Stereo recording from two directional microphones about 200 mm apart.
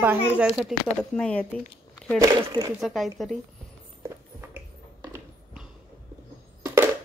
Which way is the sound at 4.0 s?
15° right (ahead or behind).